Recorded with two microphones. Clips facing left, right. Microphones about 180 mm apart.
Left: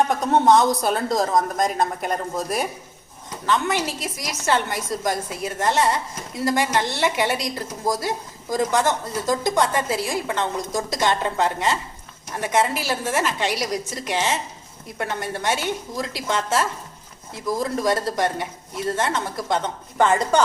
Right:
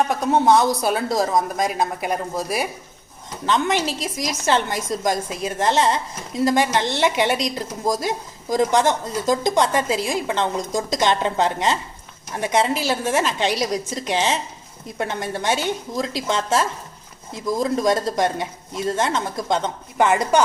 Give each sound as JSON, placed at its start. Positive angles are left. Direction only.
{"t": 0.1, "sound": "a woman's voice", "side_deg": -5}
{"t": 3.4, "sound": "a woman's voice", "side_deg": -20}